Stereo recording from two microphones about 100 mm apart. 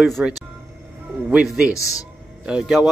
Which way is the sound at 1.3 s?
5° right (ahead or behind).